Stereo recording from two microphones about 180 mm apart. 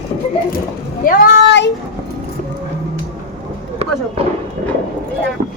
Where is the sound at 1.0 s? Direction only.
55° left (ahead or behind); by 1.7 s 75° left (ahead or behind).